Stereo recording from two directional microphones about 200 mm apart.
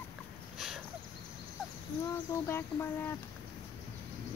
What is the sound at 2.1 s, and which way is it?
Speech, 10° left (ahead or behind).